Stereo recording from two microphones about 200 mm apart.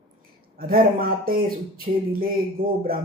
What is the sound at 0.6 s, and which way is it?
Speech, 45° right (ahead or behind).